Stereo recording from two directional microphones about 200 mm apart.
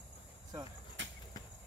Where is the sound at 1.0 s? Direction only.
70° right (ahead or behind).